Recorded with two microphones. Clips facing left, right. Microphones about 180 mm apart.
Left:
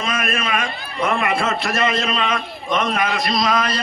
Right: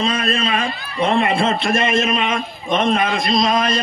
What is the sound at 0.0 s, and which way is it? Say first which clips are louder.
A man's voice: right 4 dB; 30° right (ahead or behind).